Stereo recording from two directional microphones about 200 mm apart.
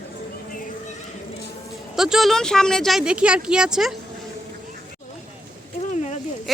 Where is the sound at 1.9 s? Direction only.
Centre (ahead or behind).